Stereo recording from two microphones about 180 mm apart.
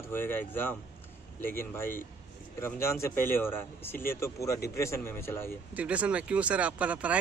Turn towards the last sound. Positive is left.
turn(degrees=-5)  # may be behind; listen again after turning